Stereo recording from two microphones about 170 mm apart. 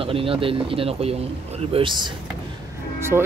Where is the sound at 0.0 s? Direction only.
35° right (ahead or behind).